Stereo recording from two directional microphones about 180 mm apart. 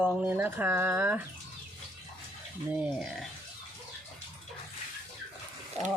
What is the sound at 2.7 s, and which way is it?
Speech, 5° right (ahead or behind).